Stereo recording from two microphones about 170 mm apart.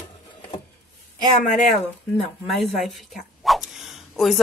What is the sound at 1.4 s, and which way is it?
Speech, 50° left (ahead or behind).